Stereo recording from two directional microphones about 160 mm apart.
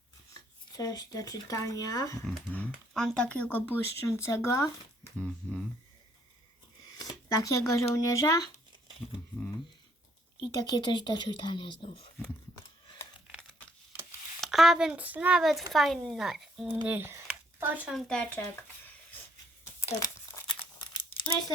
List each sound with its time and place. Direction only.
0.3 s speech: 25° left (ahead or behind)
2.2 s speech: 5° left (ahead or behind)
5.2 s speech: 5° left (ahead or behind)
7.0 s a sound: 20° left (ahead or behind)
7.9 s speech: 20° left (ahead or behind)
10.5 s speech: 25° left (ahead or behind)
14.4 s speech: centre (ahead or behind)
16.8 s speech: 10° right (ahead or behind)
18.1 s speech: 10° left (ahead or behind)
20.5 s crumpling: 30° left (ahead or behind)